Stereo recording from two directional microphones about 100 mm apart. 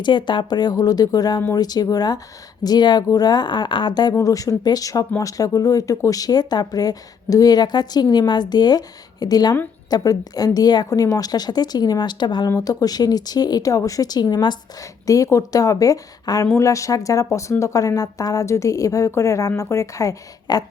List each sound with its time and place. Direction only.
0.0 s a woman's voice: 50° left (ahead or behind)
4.1 s a woman's voice: 35° left (ahead or behind)